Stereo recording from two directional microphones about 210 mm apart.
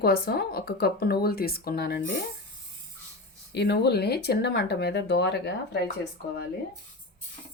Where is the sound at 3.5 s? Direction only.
55° left (ahead or behind).